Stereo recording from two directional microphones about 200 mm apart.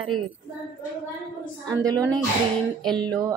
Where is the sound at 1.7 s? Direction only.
20° right (ahead or behind).